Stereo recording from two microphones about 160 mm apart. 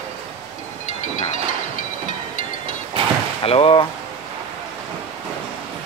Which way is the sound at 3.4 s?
35° left (ahead or behind).